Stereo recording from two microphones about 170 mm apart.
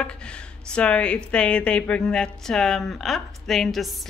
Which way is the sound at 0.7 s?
5° left (ahead or behind).